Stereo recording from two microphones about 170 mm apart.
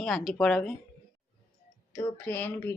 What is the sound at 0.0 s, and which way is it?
Speech, 5° left (ahead or behind).